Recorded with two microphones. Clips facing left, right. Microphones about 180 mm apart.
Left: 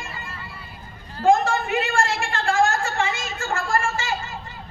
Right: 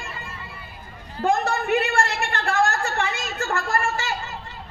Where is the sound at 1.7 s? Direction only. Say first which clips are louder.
Right 1 dB; 60° right (ahead or behind).